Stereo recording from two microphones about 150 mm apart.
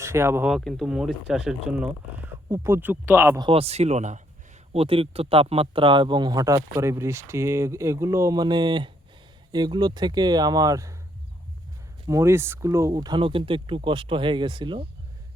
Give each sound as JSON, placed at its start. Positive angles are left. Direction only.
{"t": 0.0, "sound": "speech", "side_deg": -15}
{"t": 0.5, "sound": "speech", "side_deg": 0}
{"t": 2.5, "sound": "speech", "side_deg": -15}
{"t": 3.4, "sound": "speech", "side_deg": -40}
{"t": 4.7, "sound": "speech", "side_deg": -40}
{"t": 12.0, "sound": "speech", "side_deg": -20}